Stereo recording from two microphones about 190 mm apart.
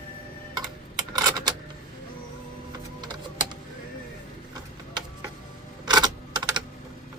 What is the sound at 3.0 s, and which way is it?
Typing, 25° right (ahead or behind).